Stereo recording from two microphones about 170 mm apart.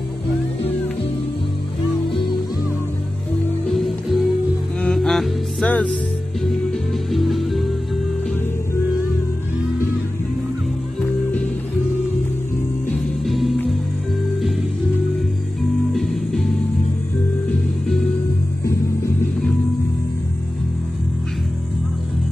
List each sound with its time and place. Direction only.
3.6 s music: centre (ahead or behind)
7.1 s music: centre (ahead or behind)
12.9 s music: centre (ahead or behind)
15.9 s music: centre (ahead or behind)
18.7 s music: 15° left (ahead or behind)